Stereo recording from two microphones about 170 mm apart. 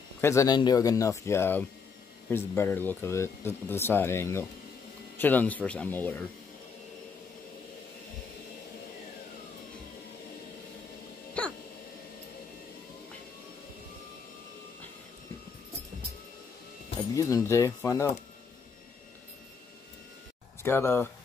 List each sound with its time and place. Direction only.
0.2 s speech: 15° left (ahead or behind)
11.4 s a sound: 5° left (ahead or behind)
17.1 s speech: 20° left (ahead or behind)
20.6 s speech: 15° left (ahead or behind)